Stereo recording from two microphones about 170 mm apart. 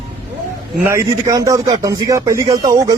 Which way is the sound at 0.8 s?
15° right (ahead or behind).